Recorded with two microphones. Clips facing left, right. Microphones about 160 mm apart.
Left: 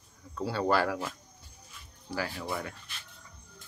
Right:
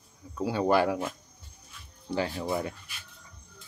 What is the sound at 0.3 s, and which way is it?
Speech, 15° right (ahead or behind).